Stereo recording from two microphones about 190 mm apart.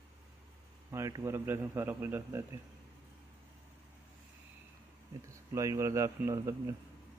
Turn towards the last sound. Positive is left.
turn(degrees=-15)  # may be behind; listen again after turning